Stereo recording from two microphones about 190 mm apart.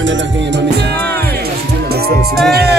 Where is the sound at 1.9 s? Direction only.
55° right (ahead or behind).